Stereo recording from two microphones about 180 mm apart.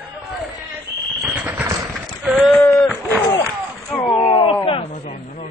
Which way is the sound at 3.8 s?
5° left (ahead or behind).